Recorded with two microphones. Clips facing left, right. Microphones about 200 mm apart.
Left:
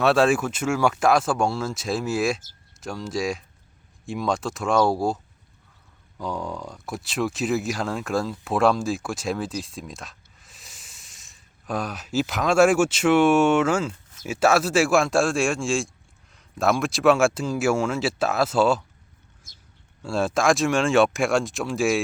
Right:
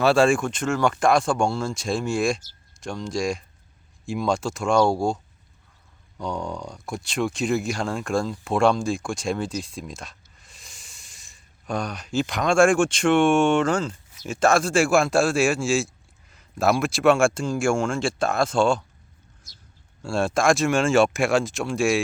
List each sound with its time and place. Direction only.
0.0 s speech: centre (ahead or behind)
19.5 s a sound: 50° left (ahead or behind)
20.0 s speech: centre (ahead or behind)